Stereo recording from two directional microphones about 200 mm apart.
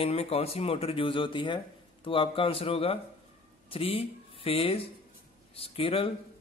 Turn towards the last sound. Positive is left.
turn(degrees=30)  # may be behind; listen again after turning